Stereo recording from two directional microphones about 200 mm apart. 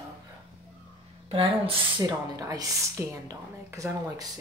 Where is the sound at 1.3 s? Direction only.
25° right (ahead or behind).